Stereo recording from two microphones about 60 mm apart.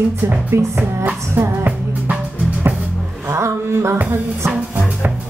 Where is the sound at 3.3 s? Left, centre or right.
Right.